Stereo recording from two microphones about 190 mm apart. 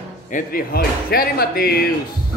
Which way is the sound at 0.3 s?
45° left (ahead or behind).